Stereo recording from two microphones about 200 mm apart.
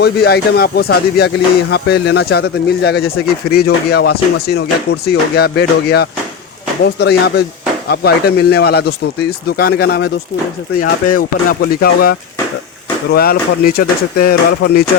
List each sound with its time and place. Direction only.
0.0 s speech: 55° left (ahead or behind)